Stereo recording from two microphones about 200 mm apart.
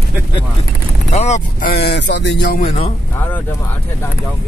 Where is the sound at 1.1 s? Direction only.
35° left (ahead or behind).